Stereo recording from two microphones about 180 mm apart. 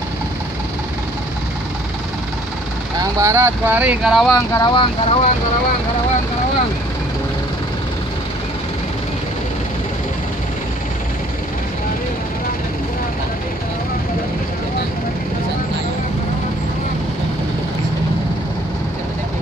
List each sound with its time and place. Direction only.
3.0 s speech: 15° right (ahead or behind)
4.4 s speech: 20° left (ahead or behind)